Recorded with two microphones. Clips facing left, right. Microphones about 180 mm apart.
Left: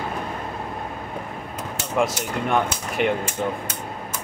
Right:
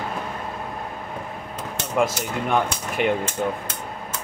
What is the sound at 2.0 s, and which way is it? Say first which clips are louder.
Speech: even; centre (ahead or behind).